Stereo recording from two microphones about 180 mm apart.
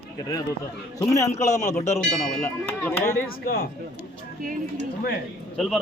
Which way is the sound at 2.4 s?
15° left (ahead or behind).